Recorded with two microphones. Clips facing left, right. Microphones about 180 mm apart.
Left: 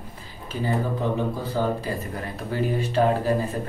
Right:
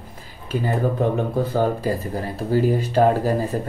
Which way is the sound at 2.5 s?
40° right (ahead or behind).